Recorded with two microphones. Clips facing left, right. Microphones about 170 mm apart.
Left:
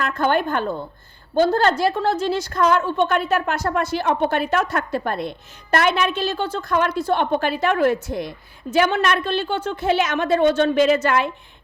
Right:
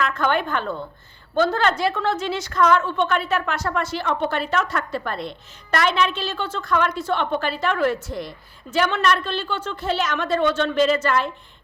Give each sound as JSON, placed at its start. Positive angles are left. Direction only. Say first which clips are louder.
{"t": 0.0, "sound": "a woman's voice", "louder": "left 2 dB", "side_deg": 45}